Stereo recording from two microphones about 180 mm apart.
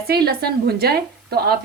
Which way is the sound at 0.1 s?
60° right (ahead or behind).